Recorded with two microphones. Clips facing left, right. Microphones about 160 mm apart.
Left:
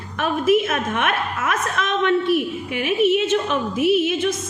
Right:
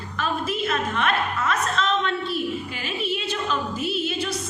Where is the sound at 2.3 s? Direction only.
65° left (ahead or behind).